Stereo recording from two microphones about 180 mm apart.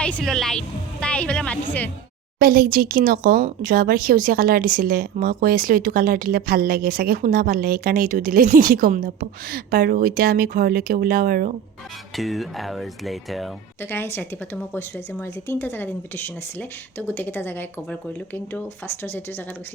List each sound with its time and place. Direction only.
0.0 s speech: 5° left (ahead or behind)
2.4 s speech: 55° right (ahead or behind)
12.1 s speech: centre (ahead or behind)
13.9 s speech: 10° left (ahead or behind)